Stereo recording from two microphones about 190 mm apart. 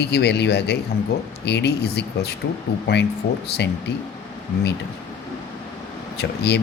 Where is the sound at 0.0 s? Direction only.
60° left (ahead or behind).